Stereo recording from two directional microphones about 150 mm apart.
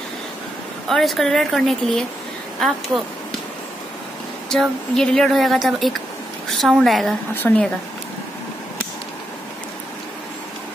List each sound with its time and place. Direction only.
0.8 s speech: centre (ahead or behind)
4.5 s speech: 5° left (ahead or behind)